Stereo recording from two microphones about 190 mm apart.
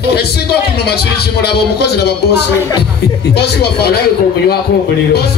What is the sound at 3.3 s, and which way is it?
Music, 60° left (ahead or behind).